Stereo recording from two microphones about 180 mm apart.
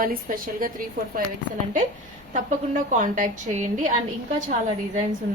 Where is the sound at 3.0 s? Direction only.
45° right (ahead or behind).